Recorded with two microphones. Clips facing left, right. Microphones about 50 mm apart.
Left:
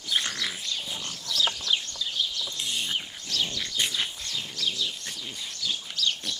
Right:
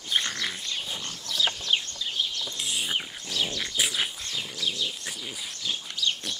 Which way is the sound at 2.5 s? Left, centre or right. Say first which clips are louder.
Right 1 dB; centre.